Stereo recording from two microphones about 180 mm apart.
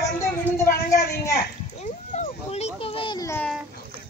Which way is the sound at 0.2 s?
15° left (ahead or behind).